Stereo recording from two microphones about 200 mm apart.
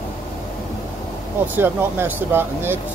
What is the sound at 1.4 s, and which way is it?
Speech, 10° right (ahead or behind).